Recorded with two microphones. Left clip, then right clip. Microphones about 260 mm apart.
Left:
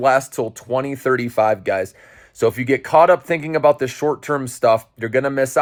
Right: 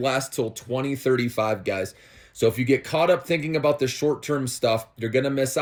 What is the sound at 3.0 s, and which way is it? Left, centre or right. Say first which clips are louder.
Speech: left 7 dB; centre.